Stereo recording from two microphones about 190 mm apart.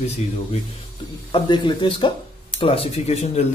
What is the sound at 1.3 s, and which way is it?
Speech, 25° left (ahead or behind).